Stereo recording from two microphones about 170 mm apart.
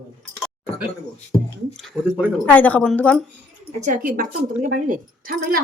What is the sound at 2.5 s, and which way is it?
Speech, 10° left (ahead or behind).